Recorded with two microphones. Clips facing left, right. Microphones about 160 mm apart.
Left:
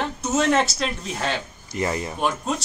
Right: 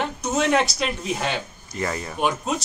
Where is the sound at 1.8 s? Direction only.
20° left (ahead or behind).